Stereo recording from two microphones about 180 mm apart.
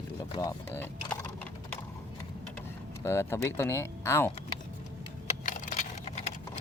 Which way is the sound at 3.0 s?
15° left (ahead or behind).